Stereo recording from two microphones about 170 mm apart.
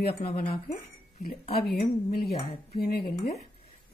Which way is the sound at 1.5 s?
65° left (ahead or behind).